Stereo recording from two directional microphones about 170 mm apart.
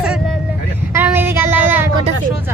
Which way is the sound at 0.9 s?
15° right (ahead or behind).